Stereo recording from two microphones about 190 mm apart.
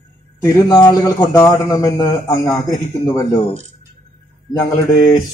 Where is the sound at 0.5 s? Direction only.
20° left (ahead or behind).